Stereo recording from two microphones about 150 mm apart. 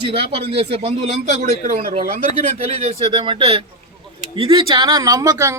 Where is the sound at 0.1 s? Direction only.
40° right (ahead or behind).